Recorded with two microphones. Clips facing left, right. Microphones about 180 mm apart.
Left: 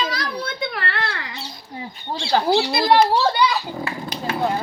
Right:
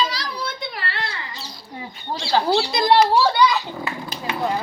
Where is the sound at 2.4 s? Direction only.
15° left (ahead or behind).